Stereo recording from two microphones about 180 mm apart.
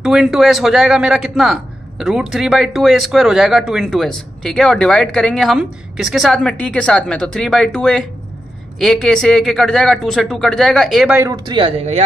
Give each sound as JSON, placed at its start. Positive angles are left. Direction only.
{"t": 0.0, "sound": "a man's voice", "side_deg": -5}
{"t": 11.1, "sound": "speech", "side_deg": -20}